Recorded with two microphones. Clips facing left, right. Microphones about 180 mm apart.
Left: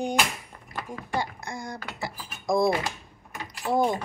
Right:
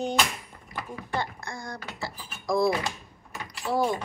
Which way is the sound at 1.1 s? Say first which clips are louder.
Left 1 dB; 15° left (ahead or behind).